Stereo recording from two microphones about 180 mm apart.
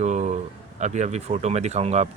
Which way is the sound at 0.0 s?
40° right (ahead or behind).